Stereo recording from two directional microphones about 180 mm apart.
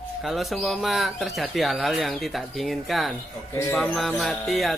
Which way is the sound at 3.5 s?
15° left (ahead or behind).